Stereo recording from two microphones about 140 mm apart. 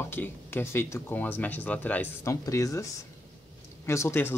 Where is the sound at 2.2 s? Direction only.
20° left (ahead or behind).